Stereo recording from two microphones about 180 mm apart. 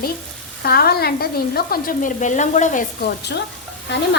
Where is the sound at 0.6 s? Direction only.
60° left (ahead or behind).